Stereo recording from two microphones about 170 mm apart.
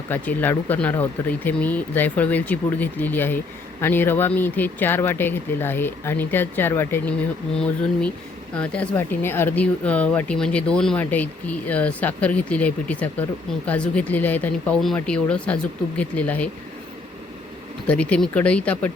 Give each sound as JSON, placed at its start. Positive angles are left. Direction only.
{"t": 0.1, "sound": "speech", "side_deg": 10}
{"t": 17.8, "sound": "speech", "side_deg": 5}